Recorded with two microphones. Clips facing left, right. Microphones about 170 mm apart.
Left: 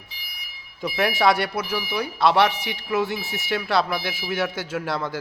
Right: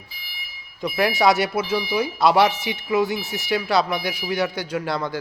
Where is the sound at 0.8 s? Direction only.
Centre (ahead or behind).